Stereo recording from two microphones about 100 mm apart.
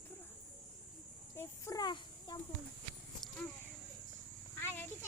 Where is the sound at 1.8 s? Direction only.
45° left (ahead or behind).